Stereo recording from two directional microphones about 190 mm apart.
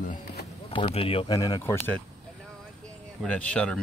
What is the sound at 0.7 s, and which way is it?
Speech, 30° left (ahead or behind).